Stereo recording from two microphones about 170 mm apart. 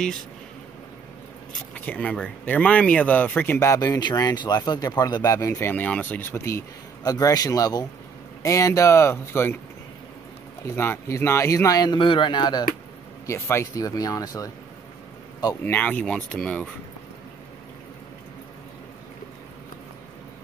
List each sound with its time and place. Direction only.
1.7 s speech: 5° left (ahead or behind)
10.8 s speech: 15° left (ahead or behind)
15.6 s speech: 10° left (ahead or behind)